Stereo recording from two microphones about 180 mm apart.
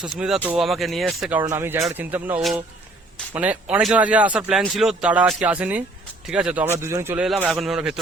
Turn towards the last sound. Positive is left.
turn(degrees=-5)  # may be behind; listen again after turning